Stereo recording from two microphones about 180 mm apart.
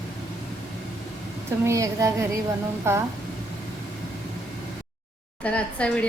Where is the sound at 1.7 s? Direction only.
15° right (ahead or behind).